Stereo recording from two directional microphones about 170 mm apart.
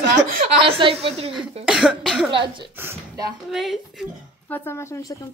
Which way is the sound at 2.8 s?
15° right (ahead or behind).